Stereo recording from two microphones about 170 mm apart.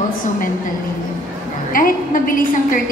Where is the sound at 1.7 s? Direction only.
55° left (ahead or behind).